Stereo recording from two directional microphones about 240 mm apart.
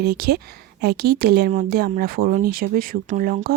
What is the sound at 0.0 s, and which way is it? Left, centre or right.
Speech, right.